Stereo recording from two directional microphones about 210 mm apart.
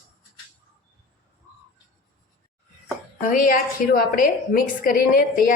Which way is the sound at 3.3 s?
40° left (ahead or behind).